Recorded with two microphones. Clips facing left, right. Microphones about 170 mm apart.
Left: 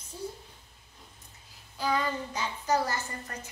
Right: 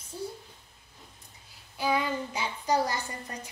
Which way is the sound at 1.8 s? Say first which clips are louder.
Right 1 dB; 10° right (ahead or behind).